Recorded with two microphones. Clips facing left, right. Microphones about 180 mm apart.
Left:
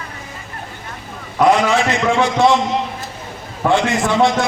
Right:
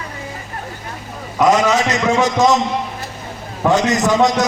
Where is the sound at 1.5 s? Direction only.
40° right (ahead or behind).